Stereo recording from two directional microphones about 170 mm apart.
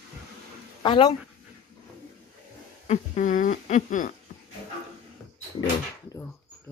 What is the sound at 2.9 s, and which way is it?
Speech, 50° left (ahead or behind).